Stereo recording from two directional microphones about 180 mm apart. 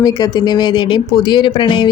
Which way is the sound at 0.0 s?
20° left (ahead or behind).